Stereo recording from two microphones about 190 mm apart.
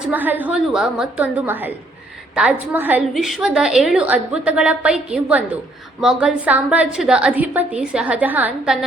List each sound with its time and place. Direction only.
0.1 s a woman's voice: 10° right (ahead or behind)